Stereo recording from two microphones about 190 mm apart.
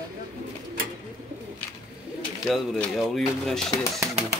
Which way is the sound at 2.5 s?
Centre (ahead or behind).